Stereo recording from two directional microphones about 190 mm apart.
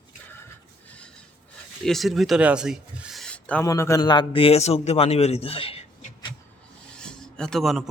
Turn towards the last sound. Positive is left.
turn(degrees=0)  # may be behind; listen again after turning